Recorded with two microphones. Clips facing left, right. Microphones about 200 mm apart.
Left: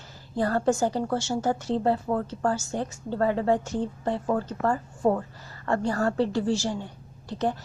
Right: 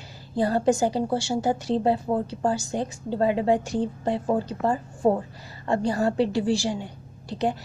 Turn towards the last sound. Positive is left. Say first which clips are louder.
# right 1 dB
turn(degrees=-15)  # may be behind; listen again after turning